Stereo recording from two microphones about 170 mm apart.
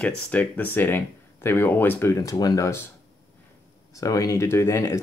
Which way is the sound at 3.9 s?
20° left (ahead or behind).